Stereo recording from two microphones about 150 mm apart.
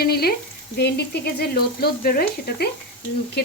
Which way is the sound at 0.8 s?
90° left.